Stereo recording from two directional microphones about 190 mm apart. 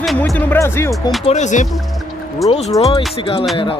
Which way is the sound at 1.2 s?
35° left (ahead or behind).